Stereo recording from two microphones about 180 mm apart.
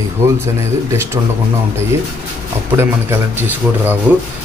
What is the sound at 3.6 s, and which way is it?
Speech, 10° right (ahead or behind).